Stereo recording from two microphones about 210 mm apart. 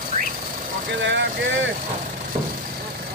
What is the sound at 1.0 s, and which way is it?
Speech, 60° right (ahead or behind).